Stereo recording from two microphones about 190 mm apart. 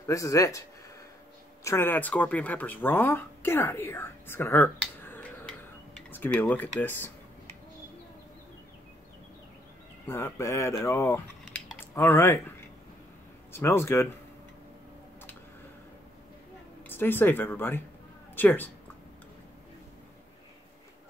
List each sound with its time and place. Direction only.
0.0 s speech: 15° left (ahead or behind)
10.0 s speech: 15° left (ahead or behind)
16.9 s speech: 10° left (ahead or behind)